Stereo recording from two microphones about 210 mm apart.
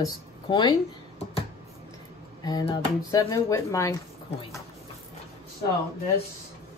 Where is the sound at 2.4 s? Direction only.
20° left (ahead or behind).